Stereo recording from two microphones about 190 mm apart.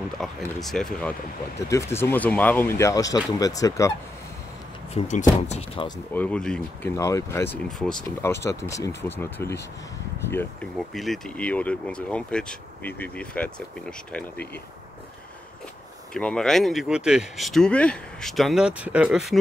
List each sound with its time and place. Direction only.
0.2 s speech: centre (ahead or behind)
1.7 s speech: 15° left (ahead or behind)
4.9 s speech: 40° left (ahead or behind)
5.5 s speech: 30° left (ahead or behind)
6.1 s speech: 5° left (ahead or behind)
7.0 s speech: 15° left (ahead or behind)
10.3 s speech: 5° left (ahead or behind)
16.1 s speech: 5° left (ahead or behind)